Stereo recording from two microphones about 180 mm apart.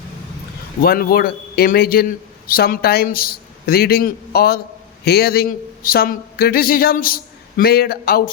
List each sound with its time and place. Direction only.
0.8 s a man's voice: 55° left (ahead or behind)